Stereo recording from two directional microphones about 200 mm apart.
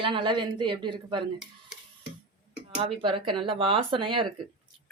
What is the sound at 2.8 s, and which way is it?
Speech, 25° right (ahead or behind).